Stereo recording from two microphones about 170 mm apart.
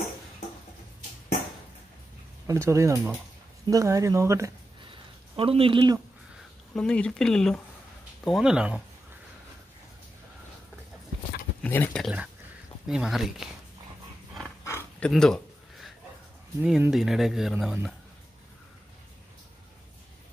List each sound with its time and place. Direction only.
2.4 s speech: 15° right (ahead or behind)
5.3 s speech: 35° right (ahead or behind)
6.7 s speech: 5° left (ahead or behind)
11.6 s speech: 10° left (ahead or behind)
12.8 s speech: 5° right (ahead or behind)
14.6 s a sound: 15° left (ahead or behind)
15.0 s a sound: 5° left (ahead or behind)
16.6 s speech: 5° right (ahead or behind)